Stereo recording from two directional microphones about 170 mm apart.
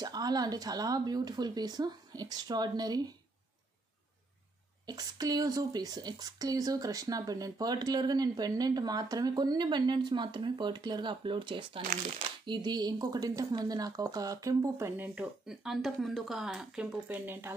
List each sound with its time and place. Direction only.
0.0 s speech: 25° right (ahead or behind)
4.8 s a woman's voice: 25° right (ahead or behind)